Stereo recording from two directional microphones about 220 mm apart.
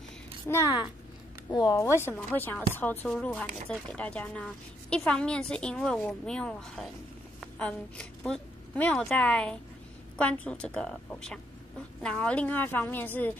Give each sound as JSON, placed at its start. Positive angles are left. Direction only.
{"t": 0.5, "sound": "a woman's voice", "side_deg": 15}